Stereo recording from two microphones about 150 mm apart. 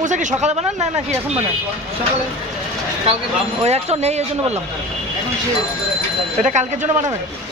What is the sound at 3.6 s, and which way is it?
Speech, 45° right (ahead or behind).